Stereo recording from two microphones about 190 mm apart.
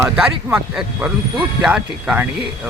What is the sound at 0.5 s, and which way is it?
Speech, 10° right (ahead or behind).